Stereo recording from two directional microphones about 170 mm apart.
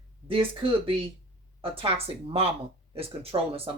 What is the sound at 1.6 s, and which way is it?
Speech, 35° right (ahead or behind).